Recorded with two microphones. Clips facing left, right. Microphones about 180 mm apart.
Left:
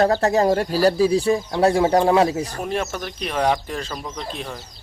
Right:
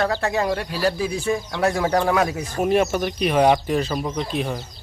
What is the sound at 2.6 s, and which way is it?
Speech, 10° right (ahead or behind).